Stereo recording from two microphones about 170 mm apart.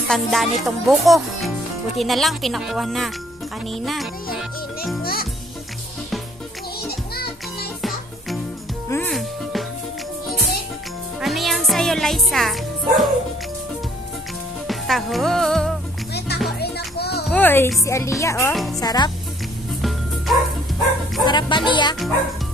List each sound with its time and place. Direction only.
0.1 s speech: centre (ahead or behind)
4.4 s music: centre (ahead or behind)
5.0 s a child's voice: 60° left (ahead or behind)
8.8 s music: 15° left (ahead or behind)
9.1 s music: centre (ahead or behind)
11.1 s music: centre (ahead or behind)
14.7 s speech: centre (ahead or behind)
16.1 s music: 75° left (ahead or behind)
17.3 s music: 10° left (ahead or behind)
17.8 s speech: 15° left (ahead or behind)
18.5 s speech: centre (ahead or behind)
18.8 s speech: 25° left (ahead or behind)
21.2 s speech: 25° left (ahead or behind)